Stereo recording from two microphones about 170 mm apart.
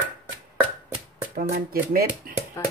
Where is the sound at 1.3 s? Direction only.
60° right (ahead or behind).